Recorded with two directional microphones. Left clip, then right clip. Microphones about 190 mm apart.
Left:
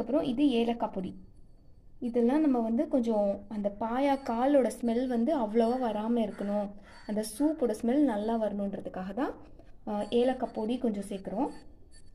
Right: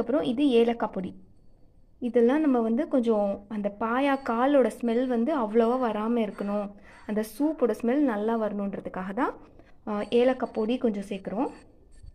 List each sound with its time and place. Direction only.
0.0 s a woman's voice: 15° right (ahead or behind)